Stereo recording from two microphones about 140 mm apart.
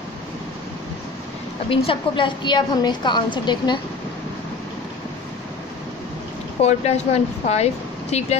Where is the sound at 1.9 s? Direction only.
35° left (ahead or behind).